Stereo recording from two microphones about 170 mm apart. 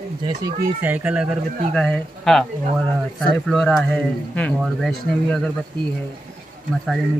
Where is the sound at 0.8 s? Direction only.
10° right (ahead or behind).